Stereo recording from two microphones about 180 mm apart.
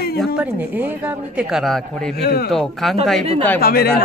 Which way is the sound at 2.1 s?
60° left (ahead or behind).